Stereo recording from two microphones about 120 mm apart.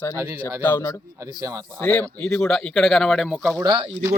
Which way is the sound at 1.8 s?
10° left (ahead or behind).